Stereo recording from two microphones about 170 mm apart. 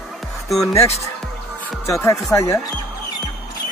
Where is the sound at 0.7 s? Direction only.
15° left (ahead or behind).